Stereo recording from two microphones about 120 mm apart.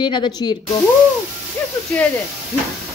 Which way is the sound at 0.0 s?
40° left (ahead or behind).